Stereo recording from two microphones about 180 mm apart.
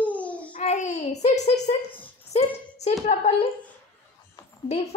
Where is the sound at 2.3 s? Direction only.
35° left (ahead or behind).